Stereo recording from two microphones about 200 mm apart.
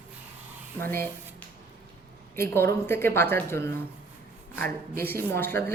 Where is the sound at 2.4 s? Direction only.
10° left (ahead or behind).